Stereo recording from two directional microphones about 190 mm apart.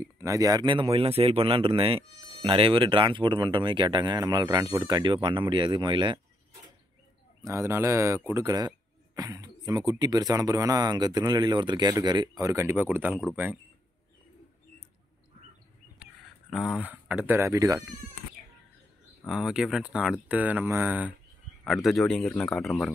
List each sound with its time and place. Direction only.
0.0 s speech: 15° right (ahead or behind)
7.4 s speech: 15° right (ahead or behind)
16.0 s speech: centre (ahead or behind)
19.2 s speech: 5° right (ahead or behind)